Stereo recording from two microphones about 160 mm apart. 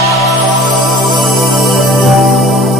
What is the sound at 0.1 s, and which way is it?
Music, centre (ahead or behind).